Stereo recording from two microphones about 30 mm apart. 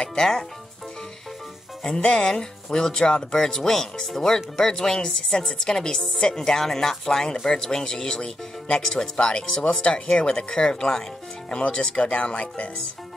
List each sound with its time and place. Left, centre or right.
0.1 s speech: centre
2.0 s speech: left
10.2 s speech: left
12.0 s speech: left